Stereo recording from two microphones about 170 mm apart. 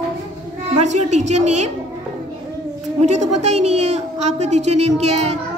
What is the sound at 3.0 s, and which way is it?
A woman's voice, 40° right (ahead or behind).